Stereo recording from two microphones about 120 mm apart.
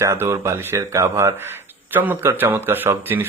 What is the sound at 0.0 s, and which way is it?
Speech, 25° right (ahead or behind).